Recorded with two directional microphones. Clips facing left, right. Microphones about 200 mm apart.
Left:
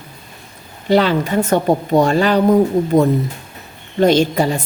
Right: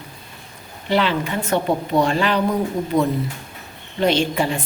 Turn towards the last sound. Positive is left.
turn(degrees=40)  # may be behind; listen again after turning